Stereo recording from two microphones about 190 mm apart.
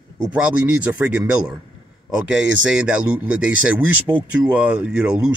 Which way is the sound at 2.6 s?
5° right (ahead or behind).